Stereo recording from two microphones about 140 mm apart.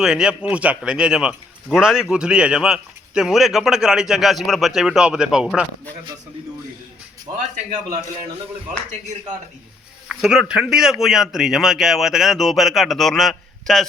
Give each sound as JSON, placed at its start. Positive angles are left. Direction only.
{"t": 0.0, "sound": "a man's voice", "side_deg": -5}
{"t": 7.3, "sound": "speech", "side_deg": -30}
{"t": 10.1, "sound": "a man's voice", "side_deg": -5}